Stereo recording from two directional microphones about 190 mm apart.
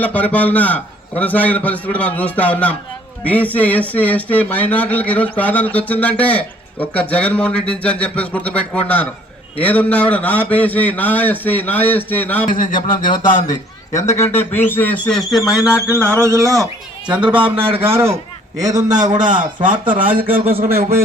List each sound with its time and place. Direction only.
0.0 s speech: 10° left (ahead or behind)
12.5 s speech: 45° left (ahead or behind)
13.5 s speech: 15° left (ahead or behind); by 15.8 s 5° right (ahead or behind)
16.0 s speech: 15° right (ahead or behind)
17.9 s a man's voice: 15° right (ahead or behind)
19.7 s speech: 25° right (ahead or behind)